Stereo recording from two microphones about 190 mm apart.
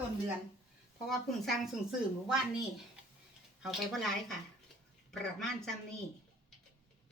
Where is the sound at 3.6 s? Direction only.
Centre (ahead or behind).